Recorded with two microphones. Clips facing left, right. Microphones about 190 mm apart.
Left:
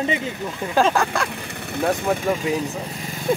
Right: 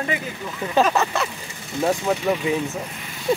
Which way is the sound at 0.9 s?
5° right (ahead or behind).